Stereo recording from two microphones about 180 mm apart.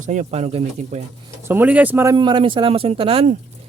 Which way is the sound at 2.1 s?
25° right (ahead or behind).